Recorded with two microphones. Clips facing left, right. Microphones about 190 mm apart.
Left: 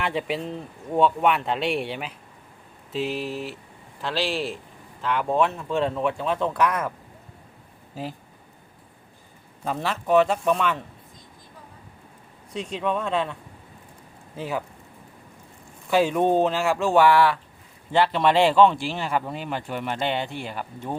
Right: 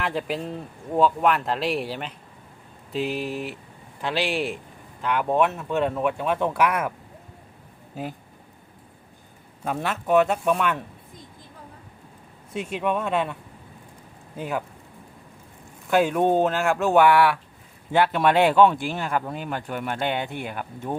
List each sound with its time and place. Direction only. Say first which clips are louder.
0.0 s speech: even; centre (ahead or behind)
4.2 s speech: right 1 dB; 15° right (ahead or behind)
9.6 s speech: even; 5° right (ahead or behind)
12.5 s speech: right 1 dB; 5° right (ahead or behind)
15.9 s speech: even; centre (ahead or behind)